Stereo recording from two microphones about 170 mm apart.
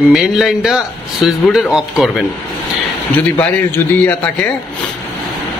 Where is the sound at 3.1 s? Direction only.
10° left (ahead or behind).